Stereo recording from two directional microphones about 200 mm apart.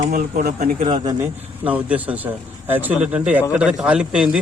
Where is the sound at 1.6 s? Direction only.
5° right (ahead or behind).